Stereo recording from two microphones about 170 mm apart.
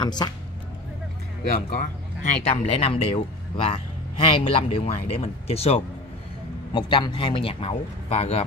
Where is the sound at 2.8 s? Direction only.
35° left (ahead or behind).